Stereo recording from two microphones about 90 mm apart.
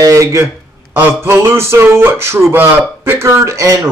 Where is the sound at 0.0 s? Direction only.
35° right (ahead or behind).